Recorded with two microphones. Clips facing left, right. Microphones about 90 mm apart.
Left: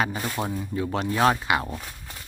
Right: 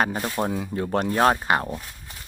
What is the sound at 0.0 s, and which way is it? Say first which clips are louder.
Speech: right 3 dB; 50° right (ahead or behind).